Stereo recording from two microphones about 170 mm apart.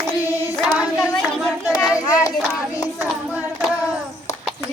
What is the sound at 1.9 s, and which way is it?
Speech, 20° left (ahead or behind).